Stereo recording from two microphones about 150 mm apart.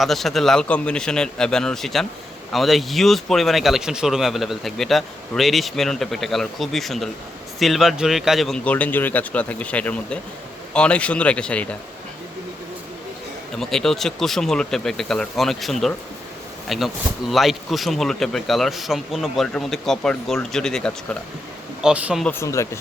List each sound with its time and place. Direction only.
0.0 s a man's voice: centre (ahead or behind)
13.6 s speech: 5° left (ahead or behind)
21.8 s speech: 5° right (ahead or behind)
22.2 s a man's voice: 15° left (ahead or behind)